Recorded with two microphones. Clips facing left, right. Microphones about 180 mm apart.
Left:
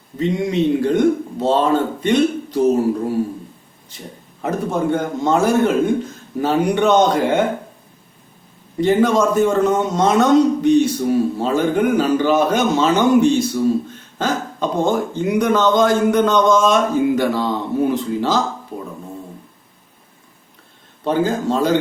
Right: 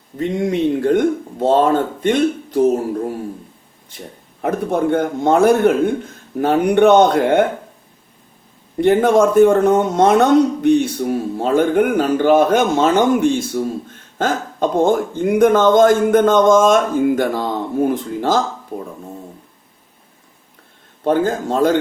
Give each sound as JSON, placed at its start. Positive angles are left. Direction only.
{"t": 0.2, "sound": "speech", "side_deg": -50}
{"t": 4.4, "sound": "a man's voice", "side_deg": -55}
{"t": 8.8, "sound": "a man's voice", "side_deg": -55}
{"t": 21.0, "sound": "speech", "side_deg": -50}